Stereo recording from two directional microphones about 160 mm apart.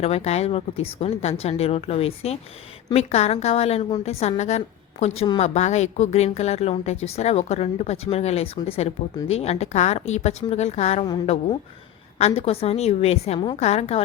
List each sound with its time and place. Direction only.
0.0 s a woman's voice: 40° left (ahead or behind)
12.2 s speech: 40° left (ahead or behind)